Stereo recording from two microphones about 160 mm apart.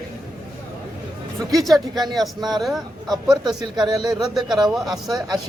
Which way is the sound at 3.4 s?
25° right (ahead or behind).